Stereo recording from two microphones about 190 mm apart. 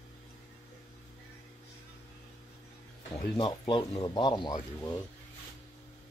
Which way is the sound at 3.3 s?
25° left (ahead or behind).